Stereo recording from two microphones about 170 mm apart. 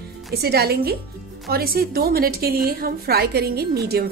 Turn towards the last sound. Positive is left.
turn(degrees=-65)  # may be behind; listen again after turning